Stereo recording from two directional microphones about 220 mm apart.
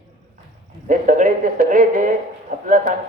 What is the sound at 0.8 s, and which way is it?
A man's voice, 35° right (ahead or behind).